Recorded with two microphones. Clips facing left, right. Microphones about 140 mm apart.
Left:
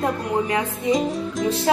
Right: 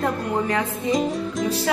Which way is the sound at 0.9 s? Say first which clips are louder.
Left 1 dB; centre (ahead or behind).